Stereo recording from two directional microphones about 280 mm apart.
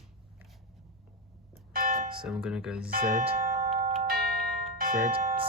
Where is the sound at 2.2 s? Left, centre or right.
Centre.